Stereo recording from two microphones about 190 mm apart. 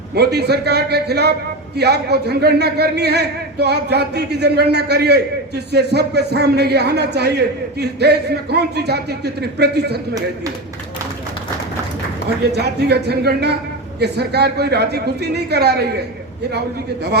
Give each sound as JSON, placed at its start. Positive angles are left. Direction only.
{"t": 0.1, "sound": "a man's voice", "side_deg": -60}
{"t": 12.5, "sound": "a man's voice", "side_deg": -60}